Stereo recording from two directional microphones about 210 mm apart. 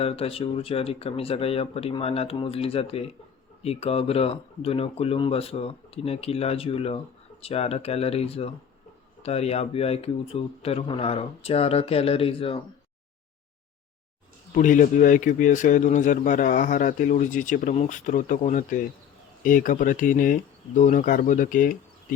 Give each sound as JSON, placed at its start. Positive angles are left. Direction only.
{"t": 0.0, "sound": "speech", "side_deg": 30}
{"t": 14.5, "sound": "speech", "side_deg": 40}